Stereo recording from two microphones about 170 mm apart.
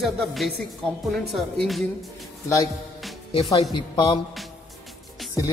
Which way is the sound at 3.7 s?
25° left (ahead or behind).